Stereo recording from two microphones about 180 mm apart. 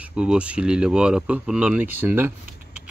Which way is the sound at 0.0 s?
5° right (ahead or behind).